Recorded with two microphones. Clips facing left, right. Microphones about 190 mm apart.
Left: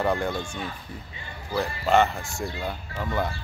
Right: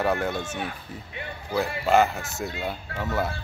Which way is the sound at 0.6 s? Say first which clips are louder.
Right 2 dB; 70° right (ahead or behind).